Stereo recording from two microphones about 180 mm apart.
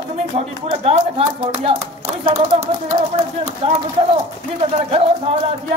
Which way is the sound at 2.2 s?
40° right (ahead or behind).